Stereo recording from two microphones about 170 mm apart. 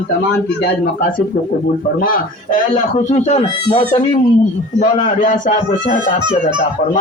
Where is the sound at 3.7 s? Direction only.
30° left (ahead or behind).